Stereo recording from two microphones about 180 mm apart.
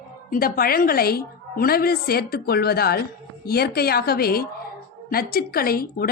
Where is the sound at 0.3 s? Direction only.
55° left (ahead or behind).